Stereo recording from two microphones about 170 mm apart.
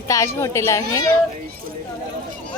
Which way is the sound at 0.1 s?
15° left (ahead or behind).